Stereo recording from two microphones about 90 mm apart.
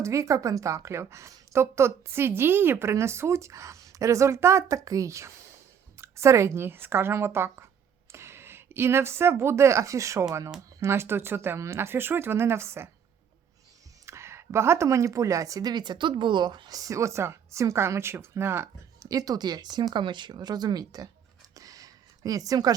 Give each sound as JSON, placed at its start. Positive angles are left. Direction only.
{"t": 0.0, "sound": "speech", "side_deg": -35}
{"t": 14.0, "sound": "speech", "side_deg": -30}
{"t": 21.5, "sound": "a sound", "side_deg": -40}